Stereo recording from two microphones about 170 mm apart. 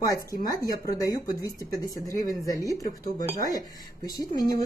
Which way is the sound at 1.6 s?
20° left (ahead or behind).